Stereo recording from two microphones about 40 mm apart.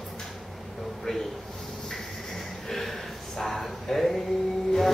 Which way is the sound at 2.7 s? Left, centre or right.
Centre.